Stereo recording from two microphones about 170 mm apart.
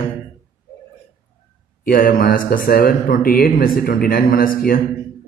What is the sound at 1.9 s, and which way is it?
A man's voice, 55° left (ahead or behind).